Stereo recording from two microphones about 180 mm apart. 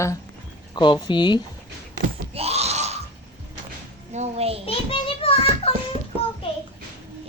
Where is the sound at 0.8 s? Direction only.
25° left (ahead or behind).